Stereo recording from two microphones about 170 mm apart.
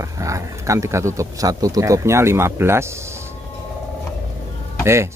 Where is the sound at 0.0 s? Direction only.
20° right (ahead or behind).